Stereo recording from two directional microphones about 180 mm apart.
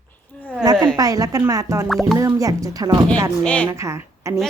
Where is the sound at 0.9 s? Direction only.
20° right (ahead or behind).